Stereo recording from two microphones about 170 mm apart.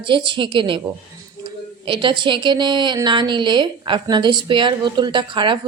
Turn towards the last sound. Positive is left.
turn(degrees=-30)  # may be behind; listen again after turning